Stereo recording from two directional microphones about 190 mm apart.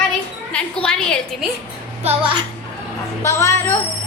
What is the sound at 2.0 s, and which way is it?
Speech, 30° right (ahead or behind).